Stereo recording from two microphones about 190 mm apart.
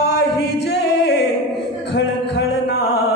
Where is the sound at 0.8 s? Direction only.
65° left (ahead or behind).